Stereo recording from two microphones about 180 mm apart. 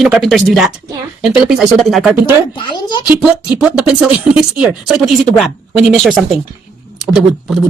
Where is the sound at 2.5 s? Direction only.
25° left (ahead or behind).